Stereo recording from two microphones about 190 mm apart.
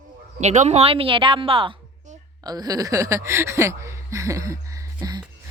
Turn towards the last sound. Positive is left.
turn(degrees=-20)  # may be behind; listen again after turning